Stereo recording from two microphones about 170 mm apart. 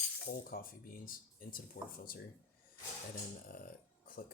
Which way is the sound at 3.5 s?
60° left (ahead or behind).